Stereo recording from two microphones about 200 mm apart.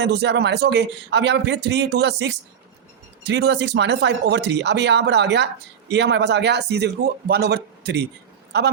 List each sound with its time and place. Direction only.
0.0 s speech: 60° right (ahead or behind)